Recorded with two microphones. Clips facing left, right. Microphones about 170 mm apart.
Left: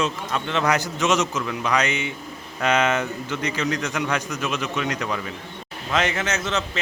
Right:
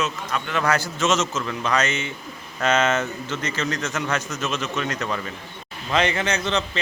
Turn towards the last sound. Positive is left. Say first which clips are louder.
# right 2 dB
turn(degrees=5)  # may be behind; listen again after turning